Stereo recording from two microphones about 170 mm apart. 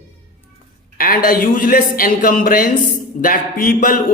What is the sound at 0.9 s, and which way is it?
Speech, 60° left (ahead or behind).